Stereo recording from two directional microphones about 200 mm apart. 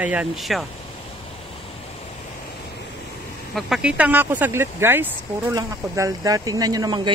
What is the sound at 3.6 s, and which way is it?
Speech, 5° right (ahead or behind).